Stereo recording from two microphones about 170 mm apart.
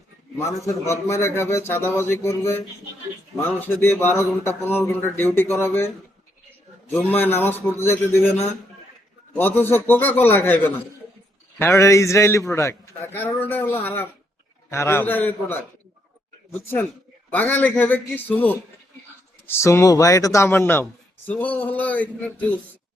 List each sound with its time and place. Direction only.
0.3 s a man's voice: 15° left (ahead or behind)
7.1 s a man's voice: 10° left (ahead or behind)
9.4 s a man's voice: 10° left (ahead or behind)
17.3 s a man's voice: 10° left (ahead or behind)